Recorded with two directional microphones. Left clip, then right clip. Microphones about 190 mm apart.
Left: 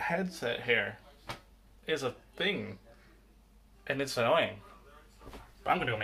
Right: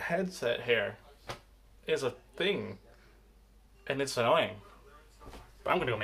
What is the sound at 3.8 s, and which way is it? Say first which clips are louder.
Speech: right 1 dB; 15° right (ahead or behind).